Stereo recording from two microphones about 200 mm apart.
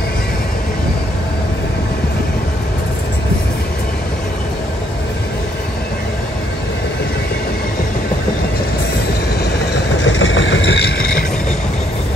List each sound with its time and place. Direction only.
10.0 s vehicle: 75° left (ahead or behind)